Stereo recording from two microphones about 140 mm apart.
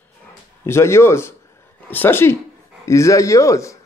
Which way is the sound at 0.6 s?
20° left (ahead or behind).